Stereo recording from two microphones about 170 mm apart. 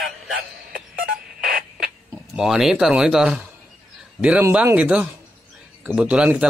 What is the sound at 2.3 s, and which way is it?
A man's voice, 5° right (ahead or behind).